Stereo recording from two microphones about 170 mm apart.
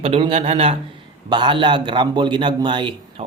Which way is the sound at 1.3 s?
25° right (ahead or behind).